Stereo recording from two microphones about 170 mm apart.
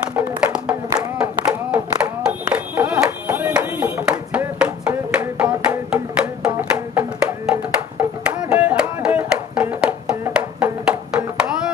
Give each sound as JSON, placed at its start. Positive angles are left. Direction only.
{"t": 0.1, "sound": "music", "side_deg": -5}
{"t": 0.9, "sound": "clapping", "side_deg": -5}
{"t": 4.8, "sound": "music", "side_deg": -5}